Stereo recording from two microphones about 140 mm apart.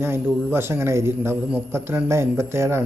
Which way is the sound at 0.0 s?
15° right (ahead or behind).